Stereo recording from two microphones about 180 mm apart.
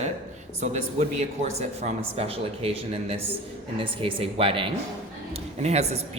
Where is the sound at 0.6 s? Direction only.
40° right (ahead or behind).